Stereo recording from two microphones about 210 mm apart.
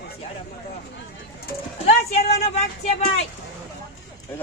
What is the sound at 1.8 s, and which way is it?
Speech, 30° left (ahead or behind).